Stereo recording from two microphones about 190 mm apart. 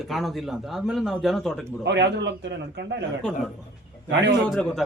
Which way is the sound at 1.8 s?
65° right (ahead or behind).